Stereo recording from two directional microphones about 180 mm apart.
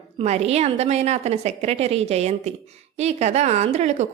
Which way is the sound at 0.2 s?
35° right (ahead or behind).